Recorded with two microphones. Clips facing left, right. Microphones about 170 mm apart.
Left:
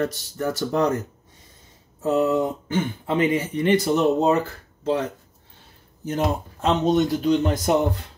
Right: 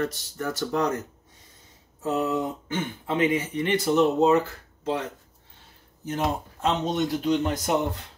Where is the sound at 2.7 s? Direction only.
35° left (ahead or behind).